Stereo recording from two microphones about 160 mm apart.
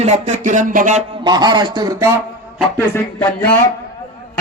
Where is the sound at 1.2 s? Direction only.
25° right (ahead or behind).